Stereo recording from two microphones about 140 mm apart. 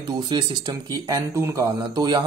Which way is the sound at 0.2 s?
30° right (ahead or behind).